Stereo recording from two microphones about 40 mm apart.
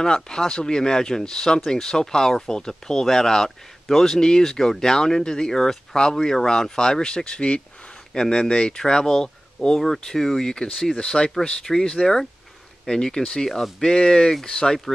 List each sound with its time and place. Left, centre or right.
0.0 s speech: centre
10.7 s speech: centre
11.1 s speech: centre